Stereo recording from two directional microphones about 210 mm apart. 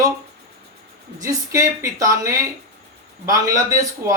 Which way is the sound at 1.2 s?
15° right (ahead or behind).